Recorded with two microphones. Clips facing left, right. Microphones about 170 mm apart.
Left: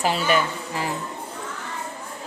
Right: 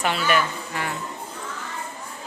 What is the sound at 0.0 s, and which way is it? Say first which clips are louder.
Speech: left 1 dB; 35° left (ahead or behind).